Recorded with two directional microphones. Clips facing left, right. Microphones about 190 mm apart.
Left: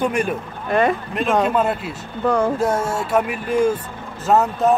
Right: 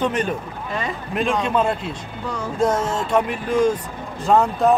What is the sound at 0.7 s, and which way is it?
Speech, 60° left (ahead or behind).